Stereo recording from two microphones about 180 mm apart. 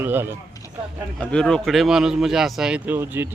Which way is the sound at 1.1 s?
5° left (ahead or behind).